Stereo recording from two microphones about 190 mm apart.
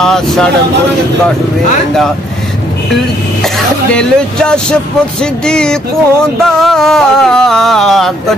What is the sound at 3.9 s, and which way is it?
Speech, 5° left (ahead or behind).